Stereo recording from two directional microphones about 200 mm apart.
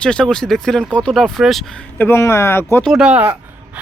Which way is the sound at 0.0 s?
5° left (ahead or behind).